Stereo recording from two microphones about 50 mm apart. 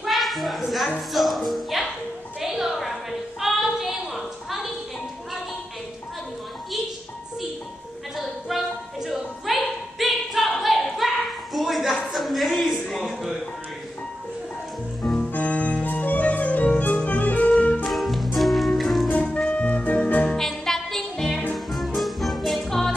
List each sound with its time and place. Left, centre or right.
0.0 s a sound: centre
1.1 s speech: centre
2.4 s a sound: centre
8.5 s a sound: centre
13.0 s music: centre
15.3 s music: left
17.8 s music: centre
19.0 s music: left
20.3 s music: centre